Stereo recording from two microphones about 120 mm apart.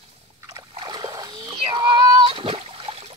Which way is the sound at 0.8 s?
35° right (ahead or behind).